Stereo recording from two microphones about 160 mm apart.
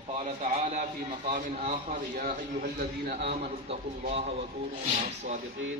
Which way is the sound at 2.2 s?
80° right.